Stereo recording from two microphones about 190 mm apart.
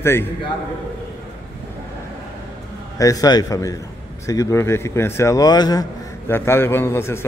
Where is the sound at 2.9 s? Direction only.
20° left (ahead or behind).